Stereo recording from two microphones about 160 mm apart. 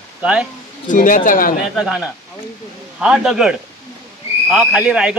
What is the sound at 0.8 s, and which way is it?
Speech, 55° left (ahead or behind).